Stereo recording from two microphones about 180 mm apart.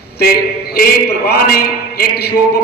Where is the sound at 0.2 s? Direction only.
60° left (ahead or behind).